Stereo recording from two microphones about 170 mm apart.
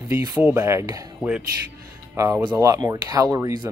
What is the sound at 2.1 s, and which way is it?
Speech, 15° right (ahead or behind).